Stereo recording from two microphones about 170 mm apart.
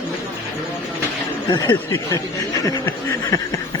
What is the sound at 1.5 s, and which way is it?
Speech, 25° left (ahead or behind).